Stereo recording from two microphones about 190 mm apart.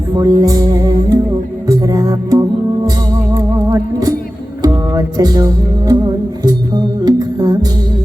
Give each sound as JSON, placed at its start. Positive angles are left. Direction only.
{"t": 0.2, "sound": "music", "side_deg": -20}
{"t": 7.0, "sound": "music", "side_deg": -20}